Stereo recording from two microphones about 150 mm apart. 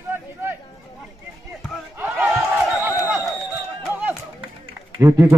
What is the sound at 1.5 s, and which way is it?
Battle cry, 10° right (ahead or behind).